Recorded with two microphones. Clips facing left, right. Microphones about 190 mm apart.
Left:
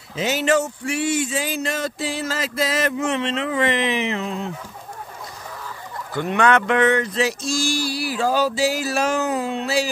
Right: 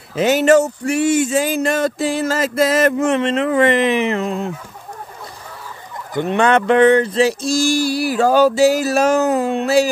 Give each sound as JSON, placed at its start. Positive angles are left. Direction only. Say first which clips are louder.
{"t": 0.1, "sound": "speech", "louder": "right 7 dB", "side_deg": -55}
{"t": 6.1, "sound": "speech", "louder": "right 3 dB", "side_deg": -25}